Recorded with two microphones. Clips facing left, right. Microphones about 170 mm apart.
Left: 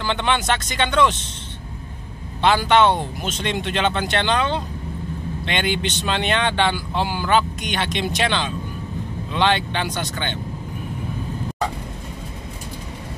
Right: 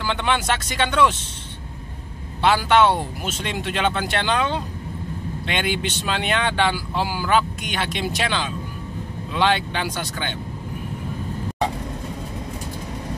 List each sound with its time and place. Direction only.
0.0 s speech: 5° right (ahead or behind)
2.4 s speech: 5° right (ahead or behind)